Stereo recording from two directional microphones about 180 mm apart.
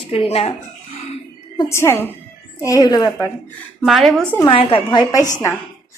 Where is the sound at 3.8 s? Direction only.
Centre (ahead or behind).